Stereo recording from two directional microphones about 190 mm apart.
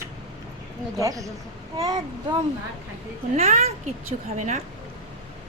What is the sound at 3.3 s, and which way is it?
Speech, 35° right (ahead or behind).